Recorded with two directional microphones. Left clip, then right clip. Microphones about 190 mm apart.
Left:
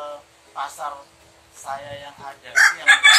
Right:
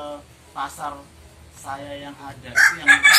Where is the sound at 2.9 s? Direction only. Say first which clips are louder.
Even; 30° left (ahead or behind).